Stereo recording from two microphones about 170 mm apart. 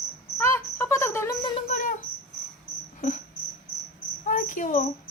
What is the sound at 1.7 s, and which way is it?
Cricket, 50° left (ahead or behind).